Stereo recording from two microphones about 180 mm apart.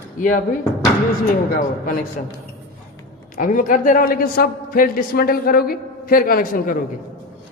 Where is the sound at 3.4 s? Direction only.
50° left (ahead or behind).